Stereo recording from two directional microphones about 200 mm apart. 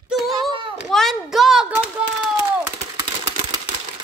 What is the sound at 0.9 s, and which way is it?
A child's voice, centre (ahead or behind).